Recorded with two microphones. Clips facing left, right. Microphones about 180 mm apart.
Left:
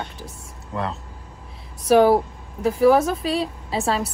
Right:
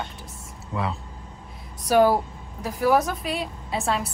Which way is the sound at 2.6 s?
25° left (ahead or behind).